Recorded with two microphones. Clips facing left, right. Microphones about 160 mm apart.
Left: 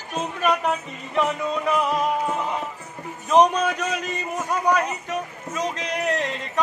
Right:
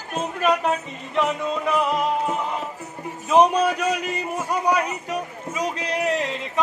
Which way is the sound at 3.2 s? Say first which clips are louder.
Right 1 dB; 5° right (ahead or behind).